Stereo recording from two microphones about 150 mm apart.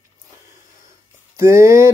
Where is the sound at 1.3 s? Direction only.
20° right (ahead or behind).